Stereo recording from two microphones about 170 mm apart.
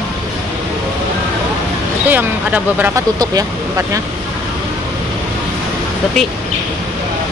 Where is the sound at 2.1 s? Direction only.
10° right (ahead or behind).